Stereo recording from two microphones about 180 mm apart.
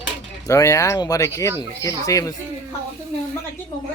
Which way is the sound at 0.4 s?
15° left (ahead or behind).